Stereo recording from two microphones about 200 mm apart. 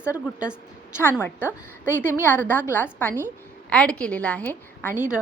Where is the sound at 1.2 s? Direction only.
10° left (ahead or behind).